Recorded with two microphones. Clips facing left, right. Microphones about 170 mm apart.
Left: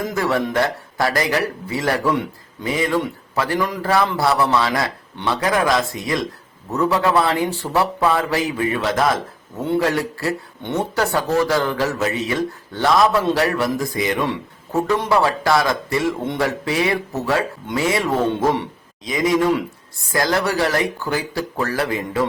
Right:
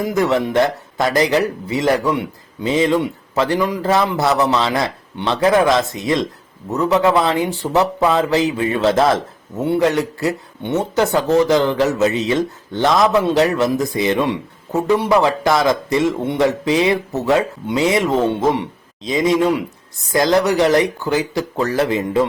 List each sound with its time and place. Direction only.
0.2 s a man's voice: 20° right (ahead or behind)
19.0 s speech: 25° right (ahead or behind)